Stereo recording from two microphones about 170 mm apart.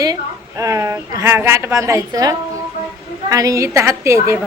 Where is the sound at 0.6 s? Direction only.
20° right (ahead or behind).